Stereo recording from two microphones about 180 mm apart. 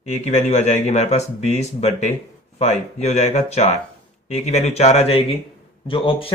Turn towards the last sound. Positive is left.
turn(degrees=30)  # may be behind; listen again after turning